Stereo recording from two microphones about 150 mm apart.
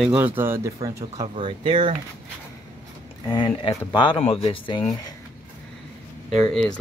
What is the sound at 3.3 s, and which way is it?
Speech, 30° left (ahead or behind).